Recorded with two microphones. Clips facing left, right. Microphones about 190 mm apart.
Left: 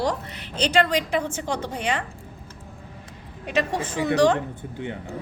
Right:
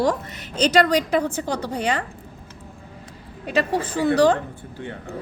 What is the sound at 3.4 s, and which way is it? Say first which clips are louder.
Speech: right 3 dB; 35° right (ahead or behind).